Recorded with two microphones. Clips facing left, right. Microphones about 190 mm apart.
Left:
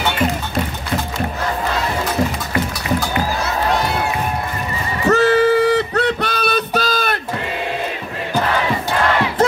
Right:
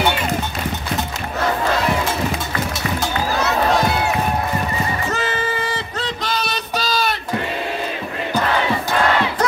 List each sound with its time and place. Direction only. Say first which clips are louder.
5.1 s music: left 10 dB; 65° left (ahead or behind)